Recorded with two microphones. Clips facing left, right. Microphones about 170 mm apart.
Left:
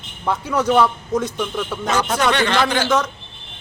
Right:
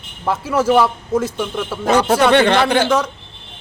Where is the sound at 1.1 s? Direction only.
25° right (ahead or behind).